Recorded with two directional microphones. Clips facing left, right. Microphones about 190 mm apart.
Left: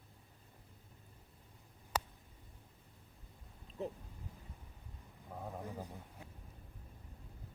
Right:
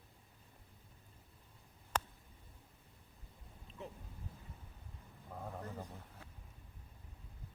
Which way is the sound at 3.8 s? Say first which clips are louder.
Left 8 dB; 35° left (ahead or behind).